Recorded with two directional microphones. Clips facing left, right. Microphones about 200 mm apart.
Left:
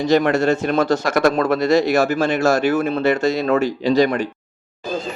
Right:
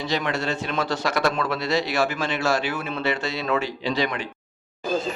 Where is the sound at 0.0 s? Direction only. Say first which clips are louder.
Left 10 dB; 45° left (ahead or behind).